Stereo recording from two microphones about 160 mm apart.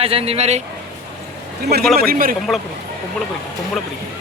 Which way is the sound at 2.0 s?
65° right (ahead or behind).